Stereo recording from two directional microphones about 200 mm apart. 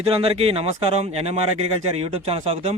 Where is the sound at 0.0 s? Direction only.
30° right (ahead or behind).